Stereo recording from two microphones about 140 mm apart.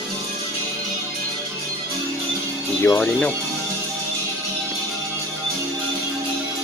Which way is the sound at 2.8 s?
15° left (ahead or behind).